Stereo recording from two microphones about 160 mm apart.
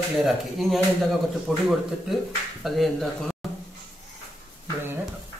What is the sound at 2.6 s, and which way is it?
Speech, centre (ahead or behind).